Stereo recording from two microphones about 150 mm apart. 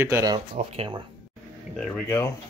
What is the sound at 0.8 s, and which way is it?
Speech, 35° right (ahead or behind).